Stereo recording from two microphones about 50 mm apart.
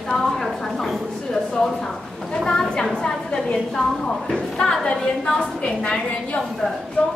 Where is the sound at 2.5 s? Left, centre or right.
Centre.